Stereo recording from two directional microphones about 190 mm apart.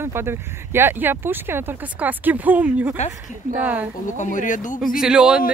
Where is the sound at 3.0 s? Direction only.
40° left (ahead or behind).